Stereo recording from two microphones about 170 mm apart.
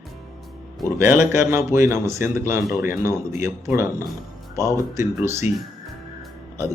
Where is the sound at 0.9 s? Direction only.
15° right (ahead or behind).